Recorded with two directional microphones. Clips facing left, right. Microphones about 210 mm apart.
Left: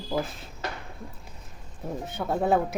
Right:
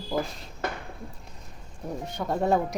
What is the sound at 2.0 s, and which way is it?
Speech, 5° left (ahead or behind).